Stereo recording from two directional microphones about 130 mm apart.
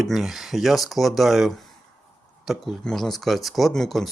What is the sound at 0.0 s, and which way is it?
Speech, centre (ahead or behind).